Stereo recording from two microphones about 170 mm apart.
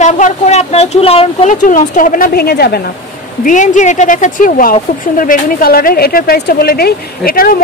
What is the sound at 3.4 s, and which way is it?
A woman's voice, 45° left (ahead or behind).